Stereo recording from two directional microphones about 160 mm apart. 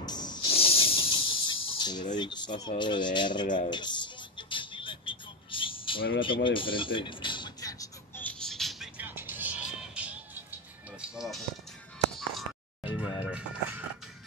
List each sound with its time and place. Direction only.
0.0 s snake: 25° left (ahead or behind)
2.1 s speech: 25° left (ahead or behind)
3.4 s speech: 55° left (ahead or behind)
3.7 s vehicle: 30° left (ahead or behind)
8.2 s music: 5° left (ahead or behind)
12.8 s music: 10° right (ahead or behind)